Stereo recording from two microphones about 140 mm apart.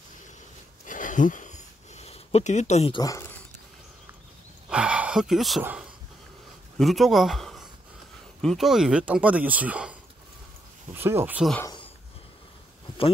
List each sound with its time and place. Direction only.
0.8 s a sound: 65° left (ahead or behind)
2.9 s speech: 25° left (ahead or behind)
4.6 s a sound: 5° right (ahead or behind)
5.6 s speech: 10° right (ahead or behind)
6.8 s speech: centre (ahead or behind)
11.0 s speech: 15° right (ahead or behind)